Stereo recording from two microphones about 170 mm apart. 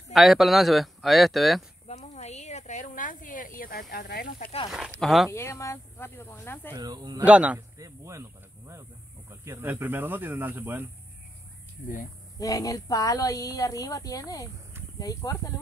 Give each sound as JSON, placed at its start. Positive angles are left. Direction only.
{"t": 0.1, "sound": "speech", "side_deg": 0}
{"t": 1.9, "sound": "snake", "side_deg": 40}
{"t": 3.9, "sound": "speech", "side_deg": 65}
{"t": 4.6, "sound": "speech", "side_deg": -5}
{"t": 5.3, "sound": "speech", "side_deg": 15}
{"t": 6.7, "sound": "speech", "side_deg": -25}
{"t": 7.2, "sound": "speech", "side_deg": -10}
{"t": 7.8, "sound": "snake", "side_deg": -15}
{"t": 9.3, "sound": "speech", "side_deg": -15}
{"t": 12.4, "sound": "a woman's voice", "side_deg": 20}